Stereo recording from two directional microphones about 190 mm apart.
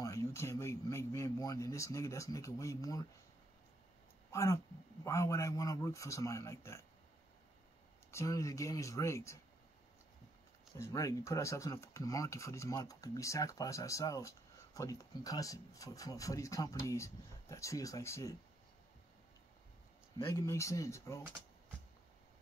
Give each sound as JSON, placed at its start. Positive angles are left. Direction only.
{"t": 0.0, "sound": "speech", "side_deg": 15}
{"t": 4.3, "sound": "speech", "side_deg": 15}
{"t": 8.1, "sound": "speech", "side_deg": 15}
{"t": 10.8, "sound": "speech", "side_deg": 15}
{"t": 20.2, "sound": "speech", "side_deg": 15}